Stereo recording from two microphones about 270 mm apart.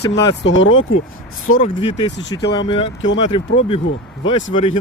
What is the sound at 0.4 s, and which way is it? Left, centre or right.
Speech, left.